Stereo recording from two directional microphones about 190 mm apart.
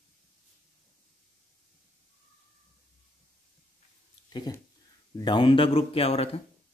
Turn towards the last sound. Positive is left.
turn(degrees=30)  # may be behind; listen again after turning